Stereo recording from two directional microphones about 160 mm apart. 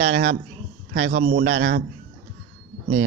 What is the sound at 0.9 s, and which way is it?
Speech, 90° right.